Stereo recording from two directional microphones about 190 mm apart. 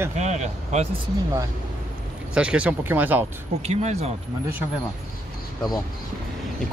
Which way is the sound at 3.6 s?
35° right (ahead or behind).